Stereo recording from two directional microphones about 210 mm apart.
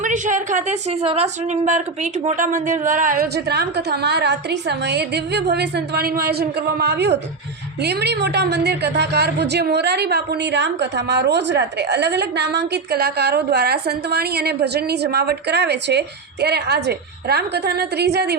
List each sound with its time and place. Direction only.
0.0 s a woman's voice: 35° right (ahead or behind)